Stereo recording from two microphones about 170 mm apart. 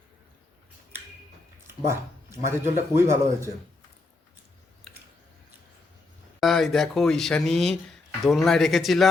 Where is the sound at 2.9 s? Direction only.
15° right (ahead or behind).